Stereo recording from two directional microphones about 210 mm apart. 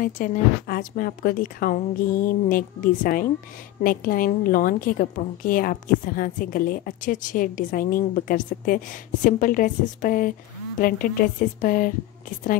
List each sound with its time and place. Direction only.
0.0 s a woman's voice: 40° left (ahead or behind)